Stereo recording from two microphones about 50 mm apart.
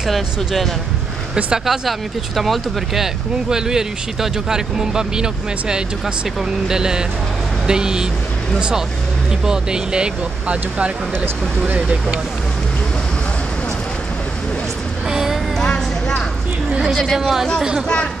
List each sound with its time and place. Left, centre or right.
0.0 s speech: centre
1.9 s speech: centre; by 10.9 s right
15.0 s vehicle: centre
15.6 s music: centre
16.9 s speech: centre
17.2 s speech: centre